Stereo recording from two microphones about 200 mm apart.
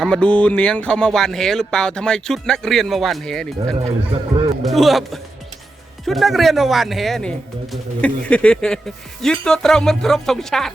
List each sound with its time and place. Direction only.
0.0 s speech: 5° left (ahead or behind)
3.8 s speech: 25° right (ahead or behind)
4.6 s speech: centre (ahead or behind)